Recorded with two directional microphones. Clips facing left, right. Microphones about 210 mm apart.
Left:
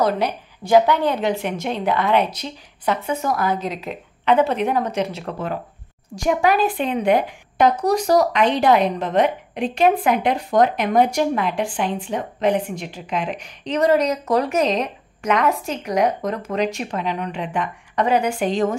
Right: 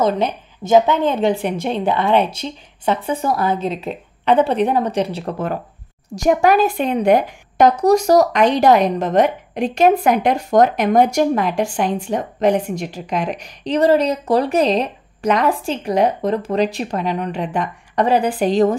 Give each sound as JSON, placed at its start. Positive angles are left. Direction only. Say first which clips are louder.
{"t": 0.0, "sound": "a woman's voice", "louder": "right 2 dB", "side_deg": -20}
{"t": 6.1, "sound": "a woman's voice", "louder": "right 4 dB", "side_deg": -45}